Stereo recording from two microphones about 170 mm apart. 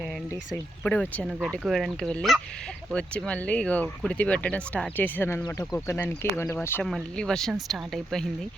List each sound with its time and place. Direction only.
0.3 s speech: 10° left (ahead or behind)
1.5 s speech: centre (ahead or behind)
6.8 s speech: 5° left (ahead or behind)